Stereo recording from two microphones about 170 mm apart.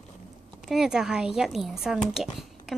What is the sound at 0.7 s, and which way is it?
Speech, 5° right (ahead or behind).